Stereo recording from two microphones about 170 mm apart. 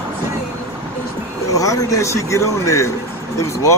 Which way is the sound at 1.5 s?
20° left (ahead or behind).